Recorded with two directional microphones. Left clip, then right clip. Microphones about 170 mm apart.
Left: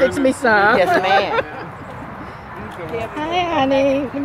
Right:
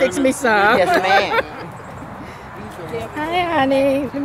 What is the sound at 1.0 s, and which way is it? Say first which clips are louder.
Speech: even; 55° left (ahead or behind).